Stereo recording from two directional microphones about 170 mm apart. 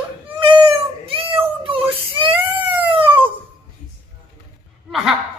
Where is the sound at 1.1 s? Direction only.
30° right (ahead or behind).